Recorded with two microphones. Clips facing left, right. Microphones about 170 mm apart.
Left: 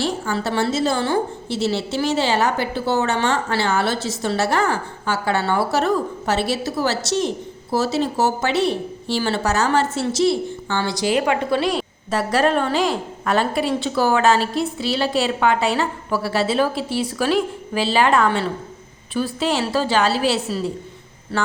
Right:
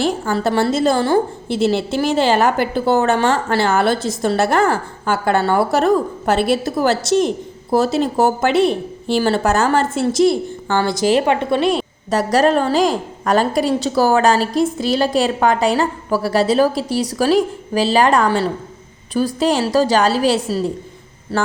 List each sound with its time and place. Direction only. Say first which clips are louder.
0.3 s a woman's voice: right 5 dB; 40° right (ahead or behind)
11.3 s a woman's voice: right 4 dB; 20° right (ahead or behind)
12.1 s a woman's voice: right 4 dB; 40° right (ahead or behind)